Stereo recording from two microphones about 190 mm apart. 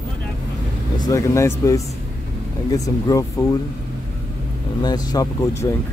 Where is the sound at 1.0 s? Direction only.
15° left (ahead or behind).